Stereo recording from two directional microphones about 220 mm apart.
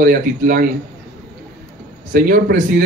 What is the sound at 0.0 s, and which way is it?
Speech, 40° right (ahead or behind).